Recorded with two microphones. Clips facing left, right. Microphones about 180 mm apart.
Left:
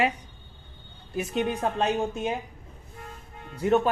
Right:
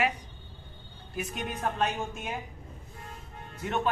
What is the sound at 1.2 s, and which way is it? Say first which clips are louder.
A woman's voice: left 8 dB; 30° left (ahead or behind).